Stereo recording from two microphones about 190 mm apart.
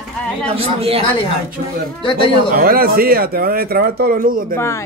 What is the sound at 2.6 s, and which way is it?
Speech, 50° right (ahead or behind).